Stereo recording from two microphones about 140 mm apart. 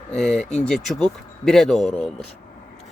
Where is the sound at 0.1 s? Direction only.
5° left (ahead or behind).